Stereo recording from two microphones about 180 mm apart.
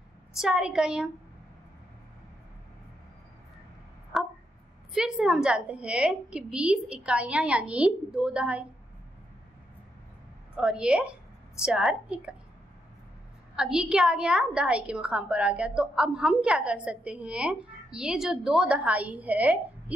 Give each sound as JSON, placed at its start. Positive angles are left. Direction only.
{"t": 0.3, "sound": "a woman's voice", "side_deg": -5}
{"t": 4.1, "sound": "a sound", "side_deg": 0}
{"t": 4.9, "sound": "a woman's voice", "side_deg": -5}
{"t": 10.5, "sound": "a woman's voice", "side_deg": -5}
{"t": 13.6, "sound": "a woman's voice", "side_deg": -5}